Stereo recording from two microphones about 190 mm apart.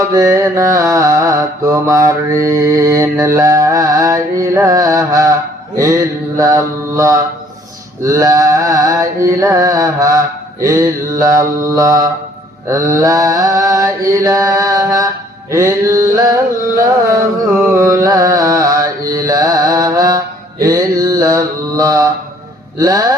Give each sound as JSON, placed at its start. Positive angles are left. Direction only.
{"t": 0.0, "sound": "mantra", "side_deg": -20}